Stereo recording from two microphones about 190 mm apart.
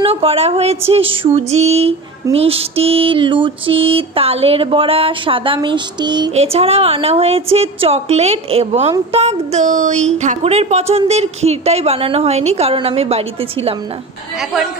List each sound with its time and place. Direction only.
0.0 s a woman's voice: 30° right (ahead or behind)
2.3 s mantra: 30° right (ahead or behind)
6.3 s a woman's voice: 30° right (ahead or behind)
14.4 s speech: centre (ahead or behind)